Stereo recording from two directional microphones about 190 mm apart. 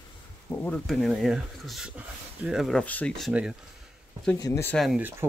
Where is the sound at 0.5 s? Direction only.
5° left (ahead or behind).